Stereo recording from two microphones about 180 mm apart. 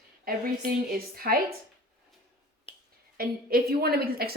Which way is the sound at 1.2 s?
55° right (ahead or behind).